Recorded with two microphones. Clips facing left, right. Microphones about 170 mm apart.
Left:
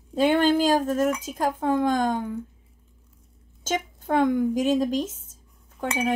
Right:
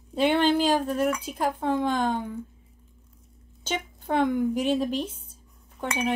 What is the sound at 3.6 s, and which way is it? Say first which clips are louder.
A woman's voice: left 4 dB; 45° left (ahead or behind).